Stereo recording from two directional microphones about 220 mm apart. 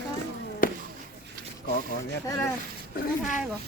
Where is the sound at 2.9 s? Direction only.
35° left (ahead or behind).